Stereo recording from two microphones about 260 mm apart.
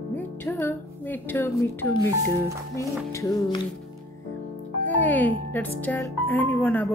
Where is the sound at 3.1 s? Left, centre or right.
Centre.